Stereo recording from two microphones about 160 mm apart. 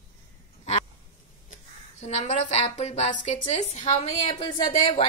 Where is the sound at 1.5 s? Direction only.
45° left (ahead or behind).